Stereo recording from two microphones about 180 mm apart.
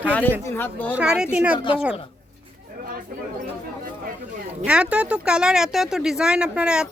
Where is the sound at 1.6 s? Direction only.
30° left (ahead or behind).